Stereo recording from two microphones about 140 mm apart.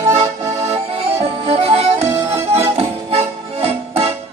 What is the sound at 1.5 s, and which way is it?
Accordion, 50° right (ahead or behind).